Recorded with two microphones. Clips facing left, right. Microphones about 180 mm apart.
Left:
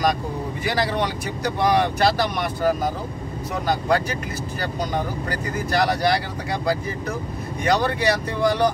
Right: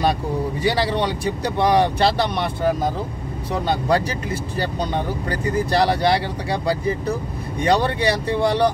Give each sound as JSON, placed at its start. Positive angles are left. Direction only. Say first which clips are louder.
{"t": 0.7, "sound": "speech", "louder": "right 2 dB", "side_deg": -30}